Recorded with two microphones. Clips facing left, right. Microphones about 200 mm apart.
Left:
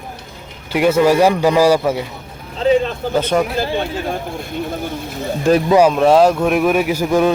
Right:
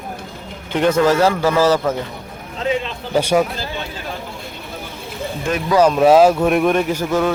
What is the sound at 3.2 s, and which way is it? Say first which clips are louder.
Speech: right 1 dB; 10° right (ahead or behind).